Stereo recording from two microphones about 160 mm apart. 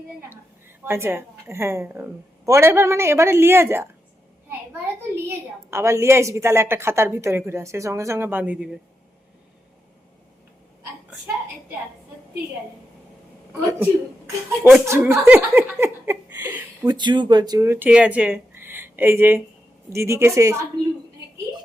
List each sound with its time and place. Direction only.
0.9 s a woman's voice: 15° right (ahead or behind)
5.7 s a woman's voice: 15° right (ahead or behind)
13.5 s a woman's voice: 15° right (ahead or behind)
15.2 s a sound: 10° right (ahead or behind)
16.8 s a woman's voice: 25° right (ahead or behind)